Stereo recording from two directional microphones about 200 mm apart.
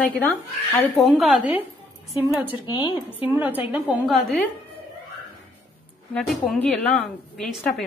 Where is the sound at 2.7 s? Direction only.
25° left (ahead or behind).